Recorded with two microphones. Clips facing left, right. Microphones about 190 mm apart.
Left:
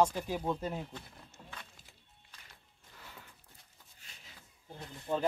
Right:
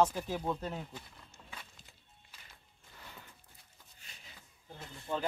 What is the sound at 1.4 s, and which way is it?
Walk, 35° left (ahead or behind).